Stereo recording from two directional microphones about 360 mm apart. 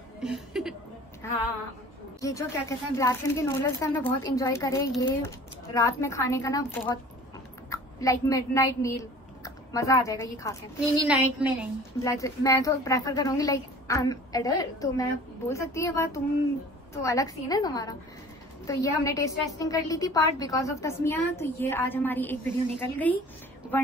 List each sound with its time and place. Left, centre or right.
0.2 s a woman's voice: centre
11.1 s a woman's voice: centre
12.0 s a woman's voice: centre